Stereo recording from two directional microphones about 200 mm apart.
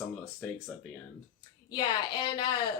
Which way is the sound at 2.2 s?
20° left (ahead or behind).